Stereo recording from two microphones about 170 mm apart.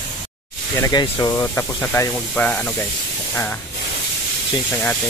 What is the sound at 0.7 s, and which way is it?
Speech, 20° left (ahead or behind).